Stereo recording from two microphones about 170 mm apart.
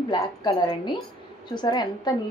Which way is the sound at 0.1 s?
25° left (ahead or behind).